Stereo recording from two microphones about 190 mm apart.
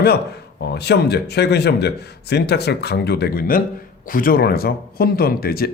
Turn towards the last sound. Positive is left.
turn(degrees=50)  # may be behind; listen again after turning